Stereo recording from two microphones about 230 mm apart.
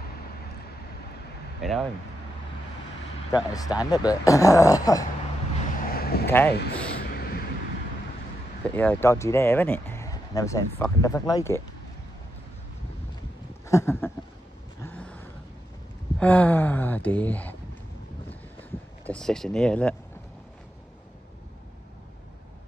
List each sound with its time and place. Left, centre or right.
1.6 s speech: centre
3.3 s speech: centre
5.6 s vehicle: left
6.2 s speech: centre
6.5 s speech: left
7.0 s vehicle: left
8.6 s speech: centre
13.7 s a sound: centre
14.8 s vehicle: centre
16.2 s speech: centre
18.3 s a sound: centre